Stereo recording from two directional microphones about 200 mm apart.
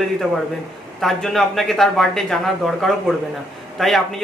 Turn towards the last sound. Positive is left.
turn(degrees=0)  # may be behind; listen again after turning